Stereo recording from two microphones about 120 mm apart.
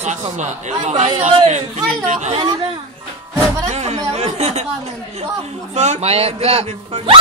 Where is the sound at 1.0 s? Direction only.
50° right (ahead or behind).